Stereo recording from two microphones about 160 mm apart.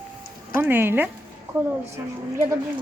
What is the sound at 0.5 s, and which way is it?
Speech, 15° right (ahead or behind).